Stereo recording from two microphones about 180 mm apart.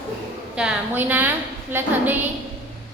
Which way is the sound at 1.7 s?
10° right (ahead or behind).